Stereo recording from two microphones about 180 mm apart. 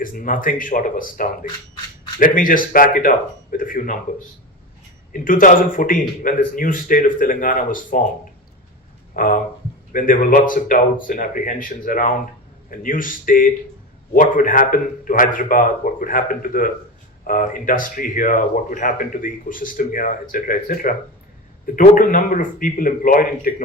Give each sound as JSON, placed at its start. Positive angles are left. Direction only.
{"t": 0.0, "sound": "speech", "side_deg": 50}
{"t": 5.1, "sound": "speech", "side_deg": 50}
{"t": 9.1, "sound": "speech", "side_deg": 50}